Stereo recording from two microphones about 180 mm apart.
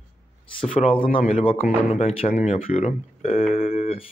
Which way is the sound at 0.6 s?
30° left (ahead or behind).